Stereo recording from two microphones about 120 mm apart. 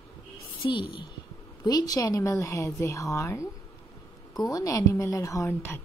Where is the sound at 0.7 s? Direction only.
45° left (ahead or behind).